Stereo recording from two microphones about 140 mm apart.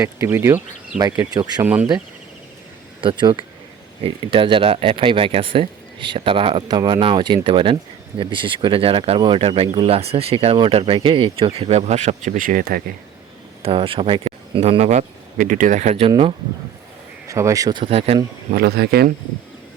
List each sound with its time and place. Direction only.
0.0 s speech: 20° right (ahead or behind)
0.9 s speech: 25° right (ahead or behind)
1.6 s speech: 10° right (ahead or behind)
3.0 s speech: 35° right (ahead or behind); by 12.8 s 85° right
13.6 s speech: 40° right (ahead or behind)
16.0 s speech: 40° right (ahead or behind)
17.2 s speech: 20° right (ahead or behind); by 18.2 s 45° right (ahead or behind)